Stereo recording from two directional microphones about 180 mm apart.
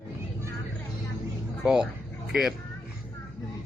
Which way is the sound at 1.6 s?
5° right (ahead or behind).